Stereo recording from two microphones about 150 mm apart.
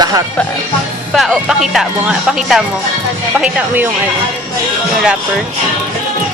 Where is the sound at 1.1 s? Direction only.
Centre (ahead or behind).